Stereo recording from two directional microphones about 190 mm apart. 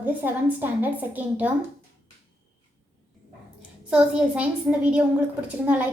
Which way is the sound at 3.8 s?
5° right (ahead or behind).